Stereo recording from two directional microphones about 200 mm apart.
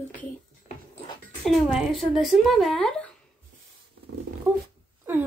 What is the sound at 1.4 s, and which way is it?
Speech, centre (ahead or behind).